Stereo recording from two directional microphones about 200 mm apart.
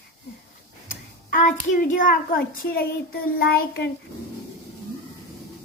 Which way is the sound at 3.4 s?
50° left (ahead or behind).